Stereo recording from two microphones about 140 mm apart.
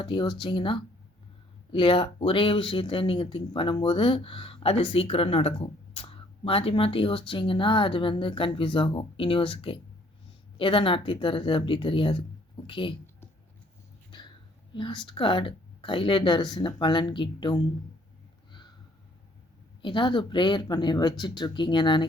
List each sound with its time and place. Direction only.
0.0 s speech: 35° left (ahead or behind)
14.7 s speech: 35° left (ahead or behind)
19.8 s speech: 35° left (ahead or behind)